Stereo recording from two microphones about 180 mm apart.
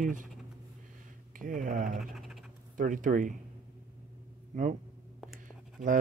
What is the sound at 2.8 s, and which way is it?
Speech, 45° right (ahead or behind).